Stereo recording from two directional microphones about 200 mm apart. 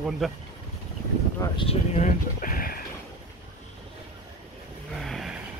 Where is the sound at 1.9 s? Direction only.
40° left (ahead or behind).